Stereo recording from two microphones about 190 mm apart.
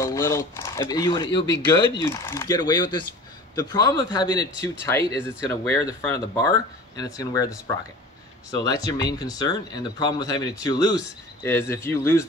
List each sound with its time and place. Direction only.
0.0 s speech: 15° left (ahead or behind)